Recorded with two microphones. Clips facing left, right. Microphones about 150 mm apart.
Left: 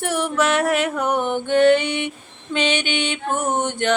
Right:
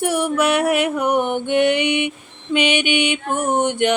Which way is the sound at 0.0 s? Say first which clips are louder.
Right 2 dB; 10° right (ahead or behind).